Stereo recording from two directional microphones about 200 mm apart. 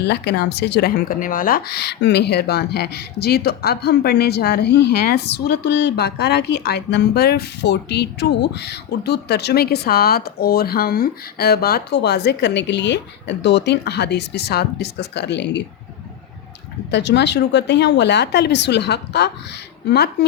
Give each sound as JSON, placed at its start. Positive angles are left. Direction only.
{"t": 0.0, "sound": "a woman's voice", "side_deg": 55}
{"t": 16.9, "sound": "a woman's voice", "side_deg": 60}